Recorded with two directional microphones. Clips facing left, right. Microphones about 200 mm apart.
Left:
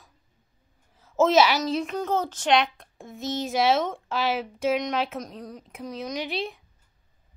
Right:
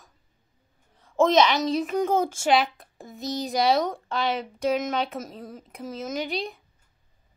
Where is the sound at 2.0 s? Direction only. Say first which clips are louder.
Right 3 dB; 10° right (ahead or behind).